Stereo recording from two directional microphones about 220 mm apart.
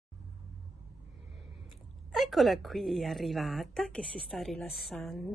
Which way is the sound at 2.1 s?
Centre (ahead or behind).